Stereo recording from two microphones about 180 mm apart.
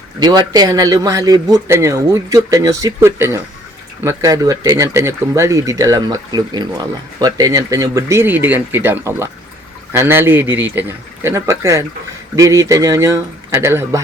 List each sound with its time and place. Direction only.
0.2 s speech: 20° right (ahead or behind)